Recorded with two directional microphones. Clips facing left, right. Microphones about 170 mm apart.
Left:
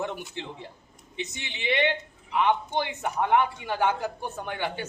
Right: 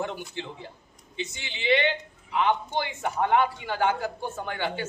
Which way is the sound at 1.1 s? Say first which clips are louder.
Even; 20° left (ahead or behind).